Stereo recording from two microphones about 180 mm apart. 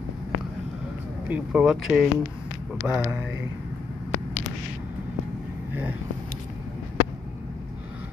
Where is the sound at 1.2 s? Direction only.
5° right (ahead or behind).